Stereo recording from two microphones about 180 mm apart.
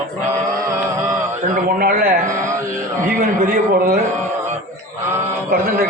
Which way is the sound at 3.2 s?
50° right (ahead or behind).